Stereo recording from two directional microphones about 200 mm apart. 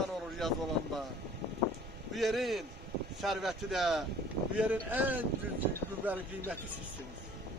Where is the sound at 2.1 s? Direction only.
Centre (ahead or behind).